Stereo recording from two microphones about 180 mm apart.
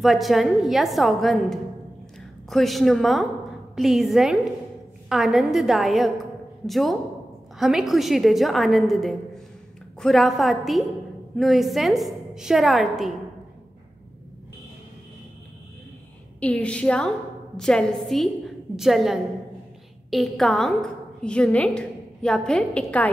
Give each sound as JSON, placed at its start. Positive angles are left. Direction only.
{"t": 0.0, "sound": "a woman's voice", "side_deg": 0}
{"t": 16.3, "sound": "a woman's voice", "side_deg": 10}